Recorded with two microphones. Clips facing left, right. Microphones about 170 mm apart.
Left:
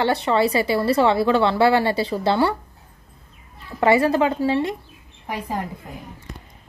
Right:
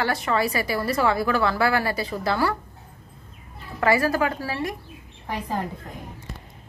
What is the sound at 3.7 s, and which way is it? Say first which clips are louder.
A woman's voice: left 4 dB; 25° left (ahead or behind).